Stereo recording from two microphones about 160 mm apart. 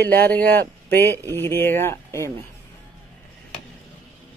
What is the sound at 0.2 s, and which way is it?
Speech, 10° left (ahead or behind).